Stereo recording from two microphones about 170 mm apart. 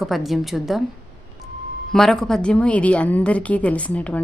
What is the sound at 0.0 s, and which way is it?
Speech, centre (ahead or behind).